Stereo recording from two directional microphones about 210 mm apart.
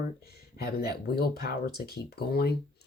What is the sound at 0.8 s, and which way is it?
Speech, 50° left (ahead or behind).